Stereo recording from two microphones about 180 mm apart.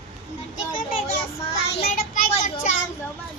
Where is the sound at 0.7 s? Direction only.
30° left (ahead or behind).